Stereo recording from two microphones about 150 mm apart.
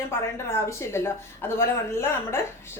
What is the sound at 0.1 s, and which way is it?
A woman's voice, 15° left (ahead or behind).